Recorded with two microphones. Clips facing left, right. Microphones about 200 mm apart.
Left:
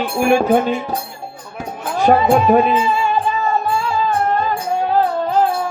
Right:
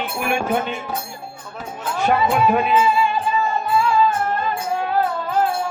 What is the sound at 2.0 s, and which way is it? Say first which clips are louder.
Speech: left 5 dB; 35° left (ahead or behind).